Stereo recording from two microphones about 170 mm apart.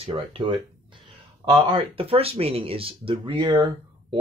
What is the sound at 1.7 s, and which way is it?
Speech, 30° right (ahead or behind).